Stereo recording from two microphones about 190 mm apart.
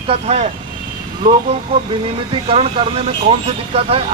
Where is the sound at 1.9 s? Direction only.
30° right (ahead or behind).